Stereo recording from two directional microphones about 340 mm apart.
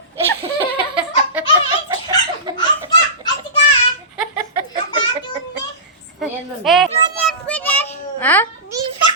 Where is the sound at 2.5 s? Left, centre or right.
Centre.